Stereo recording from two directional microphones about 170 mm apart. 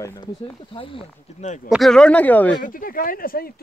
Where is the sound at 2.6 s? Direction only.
55° left (ahead or behind).